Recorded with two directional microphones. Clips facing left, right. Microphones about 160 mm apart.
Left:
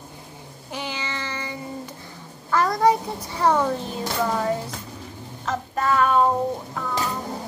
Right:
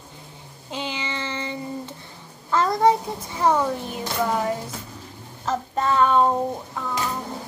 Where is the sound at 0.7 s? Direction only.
20° right (ahead or behind).